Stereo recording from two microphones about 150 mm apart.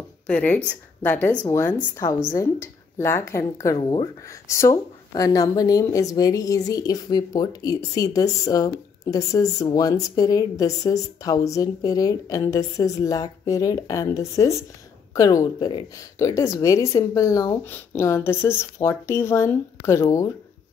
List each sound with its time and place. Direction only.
0.3 s speech: 10° left (ahead or behind)
3.7 s speech: 35° left (ahead or behind)
4.3 s a woman's voice: 20° left (ahead or behind)